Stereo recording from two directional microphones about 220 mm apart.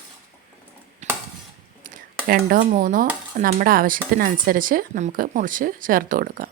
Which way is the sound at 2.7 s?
35° right (ahead or behind).